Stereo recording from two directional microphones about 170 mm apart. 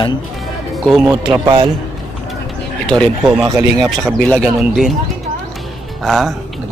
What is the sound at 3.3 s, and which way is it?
Speech, 10° right (ahead or behind).